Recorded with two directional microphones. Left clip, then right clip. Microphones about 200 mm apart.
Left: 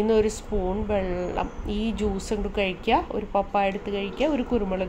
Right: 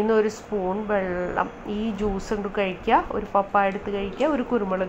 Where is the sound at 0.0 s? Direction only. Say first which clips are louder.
Right 1 dB; 20° left (ahead or behind).